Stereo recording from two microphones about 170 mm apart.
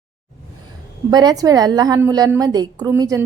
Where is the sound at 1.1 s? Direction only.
20° right (ahead or behind).